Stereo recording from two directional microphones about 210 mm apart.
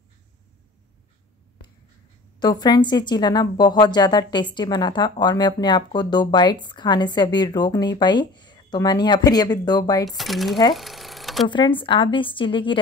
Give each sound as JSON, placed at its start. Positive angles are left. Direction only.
{"t": 2.4, "sound": "speech", "side_deg": 20}
{"t": 10.0, "sound": "speech", "side_deg": 0}
{"t": 10.7, "sound": "a sound", "side_deg": 0}
{"t": 11.4, "sound": "speech", "side_deg": 20}